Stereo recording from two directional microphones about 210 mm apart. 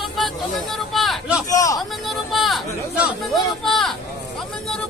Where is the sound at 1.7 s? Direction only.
Centre (ahead or behind).